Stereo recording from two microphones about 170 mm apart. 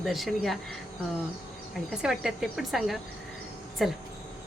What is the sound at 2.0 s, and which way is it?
Speech, centre (ahead or behind).